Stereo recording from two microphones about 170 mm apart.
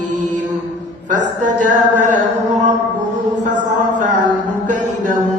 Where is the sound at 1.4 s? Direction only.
45° right (ahead or behind).